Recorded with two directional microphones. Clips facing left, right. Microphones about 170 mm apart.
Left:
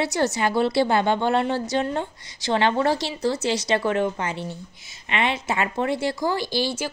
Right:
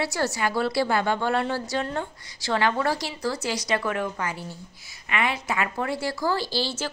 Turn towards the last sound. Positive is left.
turn(degrees=15)  # may be behind; listen again after turning